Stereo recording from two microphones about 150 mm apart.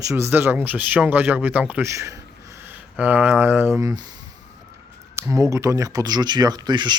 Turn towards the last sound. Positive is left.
turn(degrees=-30)  # may be behind; listen again after turning